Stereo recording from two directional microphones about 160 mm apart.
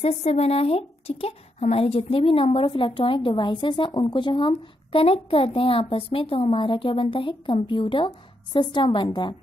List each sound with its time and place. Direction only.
0.0 s a woman's voice: 40° left (ahead or behind)